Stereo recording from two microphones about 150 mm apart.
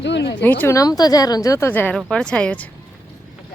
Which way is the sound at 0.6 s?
20° left (ahead or behind).